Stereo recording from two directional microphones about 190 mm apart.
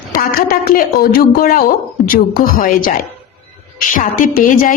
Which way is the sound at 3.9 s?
45° left (ahead or behind).